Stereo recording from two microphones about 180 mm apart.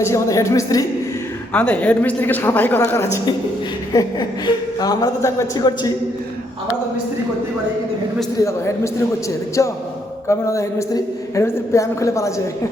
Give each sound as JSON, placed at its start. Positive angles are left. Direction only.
{"t": 0.0, "sound": "a woman's voice", "side_deg": 15}
{"t": 8.4, "sound": "a woman's voice", "side_deg": 15}